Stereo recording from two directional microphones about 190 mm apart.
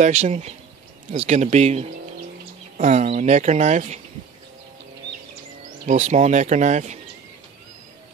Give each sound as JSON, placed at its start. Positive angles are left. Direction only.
{"t": 0.0, "sound": "speech", "side_deg": -40}
{"t": 5.9, "sound": "speech", "side_deg": -40}